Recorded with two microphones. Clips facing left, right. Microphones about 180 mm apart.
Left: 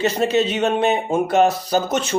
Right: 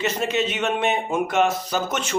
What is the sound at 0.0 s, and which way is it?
Speech, 35° left (ahead or behind).